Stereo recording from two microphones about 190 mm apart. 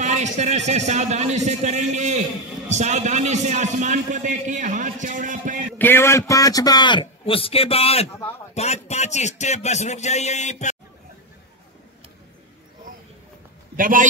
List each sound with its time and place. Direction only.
0.0 s a man's voice: 40° right (ahead or behind)
5.7 s a man's voice: 10° left (ahead or behind); by 10.8 s 40° left (ahead or behind)
13.7 s a man's voice: 45° right (ahead or behind)